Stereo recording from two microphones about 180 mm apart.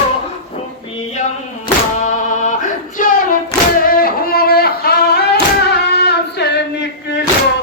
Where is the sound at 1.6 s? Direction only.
45° left (ahead or behind).